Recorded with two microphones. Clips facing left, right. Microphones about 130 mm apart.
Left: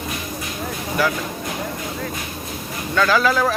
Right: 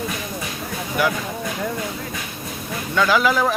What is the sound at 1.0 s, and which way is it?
Speech, 15° right (ahead or behind).